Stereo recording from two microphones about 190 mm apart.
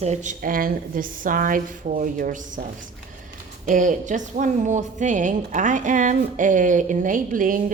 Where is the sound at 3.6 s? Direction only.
40° right (ahead or behind).